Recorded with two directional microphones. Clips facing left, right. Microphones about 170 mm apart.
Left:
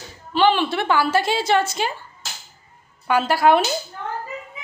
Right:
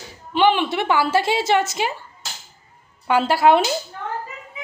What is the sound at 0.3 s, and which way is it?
A woman's voice, 20° right (ahead or behind).